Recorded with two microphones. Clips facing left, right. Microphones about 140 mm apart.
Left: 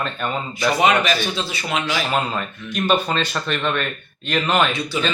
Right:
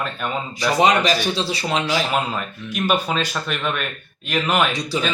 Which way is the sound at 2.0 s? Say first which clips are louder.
Even; 5° right (ahead or behind).